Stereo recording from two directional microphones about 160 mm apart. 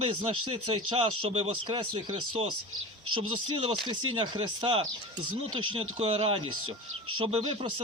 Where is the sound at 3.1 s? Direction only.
35° right (ahead or behind).